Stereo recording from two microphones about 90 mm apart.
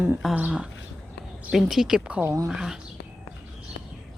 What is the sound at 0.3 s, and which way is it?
Speech, 15° right (ahead or behind).